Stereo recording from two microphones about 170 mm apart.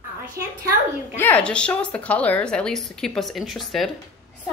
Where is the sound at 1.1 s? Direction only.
10° left (ahead or behind).